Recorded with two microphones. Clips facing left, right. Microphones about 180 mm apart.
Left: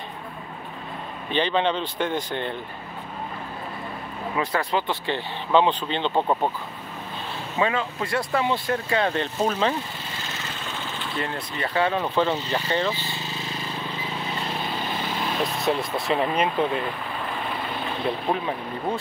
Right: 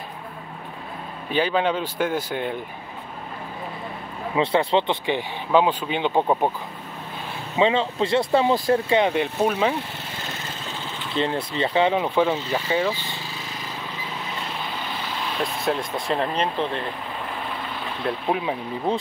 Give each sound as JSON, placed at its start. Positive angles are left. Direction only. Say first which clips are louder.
{"t": 1.3, "sound": "speech", "louder": "right 1 dB", "side_deg": -5}
{"t": 4.4, "sound": "speech", "louder": "right 5 dB", "side_deg": -25}
{"t": 5.0, "sound": "speech", "louder": "right 3 dB", "side_deg": -10}
{"t": 7.5, "sound": "speech", "louder": "right 5 dB", "side_deg": -25}
{"t": 8.8, "sound": "speech", "louder": "right 4 dB", "side_deg": -15}
{"t": 11.1, "sound": "speech", "louder": "right 7 dB", "side_deg": -25}
{"t": 15.5, "sound": "speech", "louder": "left 1 dB", "side_deg": 0}
{"t": 18.3, "sound": "speech", "louder": "right 4 dB", "side_deg": -10}
{"t": 18.9, "sound": "speech", "louder": "right 4 dB", "side_deg": -20}